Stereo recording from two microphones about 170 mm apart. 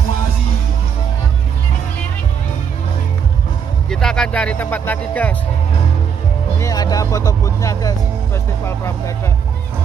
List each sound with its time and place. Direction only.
3.9 s speech: 5° left (ahead or behind)
6.6 s speech: 20° left (ahead or behind)